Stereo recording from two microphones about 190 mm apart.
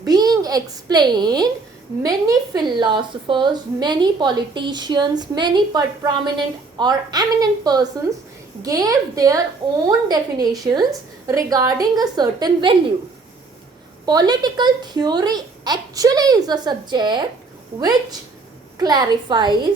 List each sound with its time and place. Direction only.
0.0 s a child's voice: 20° right (ahead or behind)
14.0 s a woman's voice: 20° right (ahead or behind)
18.8 s a woman's voice: 20° right (ahead or behind)